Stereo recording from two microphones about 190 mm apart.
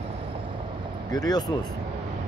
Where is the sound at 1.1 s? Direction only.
20° left (ahead or behind).